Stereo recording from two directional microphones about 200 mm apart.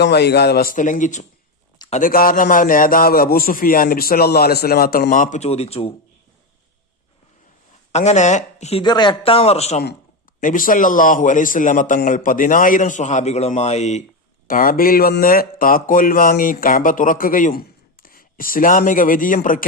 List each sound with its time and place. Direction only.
0.0 s speech: 55° left (ahead or behind); by 5.9 s 30° left (ahead or behind)
7.9 s a man's voice: 35° left (ahead or behind)
8.8 s speech: 20° left (ahead or behind)
10.4 s a man's voice: 45° left (ahead or behind)
14.4 s speech: 45° left (ahead or behind)